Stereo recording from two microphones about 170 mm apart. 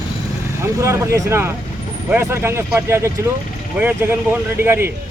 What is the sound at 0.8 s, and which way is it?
Speech, 15° right (ahead or behind).